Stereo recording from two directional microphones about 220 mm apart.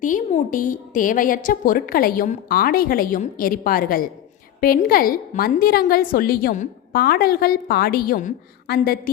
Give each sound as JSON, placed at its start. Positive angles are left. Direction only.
{"t": 0.0, "sound": "a woman's voice", "side_deg": 35}